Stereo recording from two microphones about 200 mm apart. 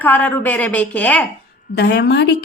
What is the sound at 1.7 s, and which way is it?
Speech, 60° left (ahead or behind).